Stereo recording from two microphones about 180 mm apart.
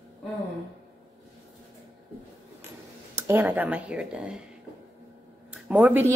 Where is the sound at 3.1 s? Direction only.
15° right (ahead or behind).